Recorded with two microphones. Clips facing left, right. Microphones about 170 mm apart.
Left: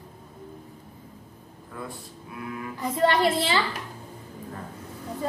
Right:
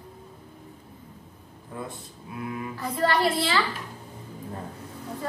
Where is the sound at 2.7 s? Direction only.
20° left (ahead or behind).